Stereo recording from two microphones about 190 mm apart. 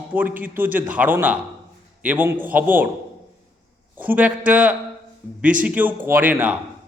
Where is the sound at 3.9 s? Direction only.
10° right (ahead or behind).